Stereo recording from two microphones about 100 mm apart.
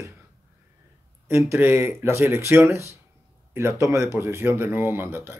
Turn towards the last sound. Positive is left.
turn(degrees=-25)  # may be behind; listen again after turning